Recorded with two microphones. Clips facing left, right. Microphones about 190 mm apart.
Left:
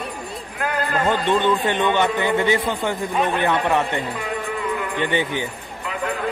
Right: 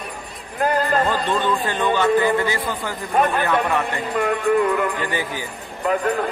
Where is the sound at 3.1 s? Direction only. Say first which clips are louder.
Right 3 dB; 50° right (ahead or behind).